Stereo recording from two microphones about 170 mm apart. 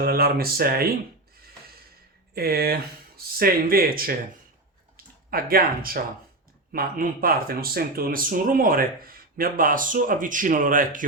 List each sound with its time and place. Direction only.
0.0 s speech: 60° right (ahead or behind)
2.3 s speech: 65° right (ahead or behind)